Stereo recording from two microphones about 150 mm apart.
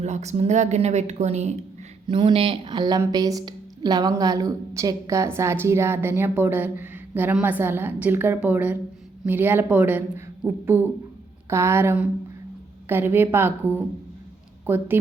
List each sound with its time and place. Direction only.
0.0 s speech: 50° right (ahead or behind)
2.0 s speech: 35° right (ahead or behind); by 14.8 s 15° right (ahead or behind)